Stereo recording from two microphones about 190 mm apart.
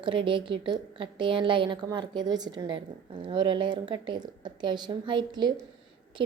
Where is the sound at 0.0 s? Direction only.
25° right (ahead or behind).